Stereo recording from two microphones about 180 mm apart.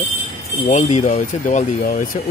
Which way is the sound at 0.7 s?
40° left (ahead or behind).